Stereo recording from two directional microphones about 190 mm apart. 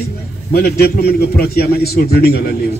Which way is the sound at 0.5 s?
55° left (ahead or behind).